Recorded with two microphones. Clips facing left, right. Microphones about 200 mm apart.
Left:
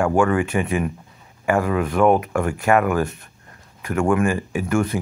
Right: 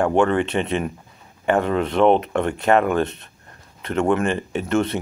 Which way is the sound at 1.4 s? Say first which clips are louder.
Even; 25° right (ahead or behind).